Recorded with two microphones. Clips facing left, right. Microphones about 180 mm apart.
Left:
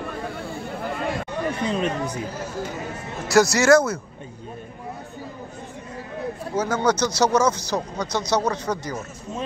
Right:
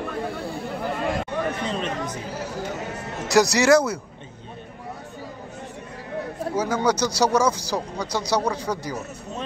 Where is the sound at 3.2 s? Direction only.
15° right (ahead or behind).